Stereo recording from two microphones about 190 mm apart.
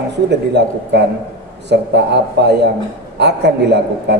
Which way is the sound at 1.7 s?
60° right (ahead or behind).